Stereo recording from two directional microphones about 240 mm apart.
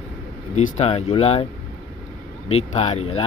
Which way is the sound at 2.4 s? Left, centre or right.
Left.